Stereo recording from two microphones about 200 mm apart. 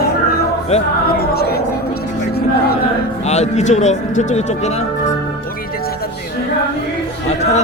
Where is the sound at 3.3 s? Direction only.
35° left (ahead or behind).